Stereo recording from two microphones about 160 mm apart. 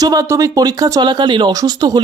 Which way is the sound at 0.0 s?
20° right (ahead or behind).